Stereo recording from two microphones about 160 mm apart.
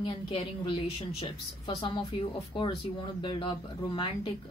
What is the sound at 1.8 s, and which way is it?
Speech, 35° left (ahead or behind).